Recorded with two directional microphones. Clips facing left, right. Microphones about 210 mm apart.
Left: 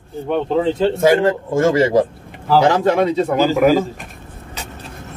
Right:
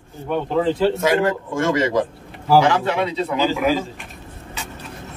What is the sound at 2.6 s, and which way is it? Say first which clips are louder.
A man's voice: left 5 dB; 40° left (ahead or behind).